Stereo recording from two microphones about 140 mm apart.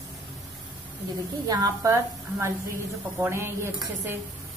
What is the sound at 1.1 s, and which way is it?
A woman's voice, 25° right (ahead or behind).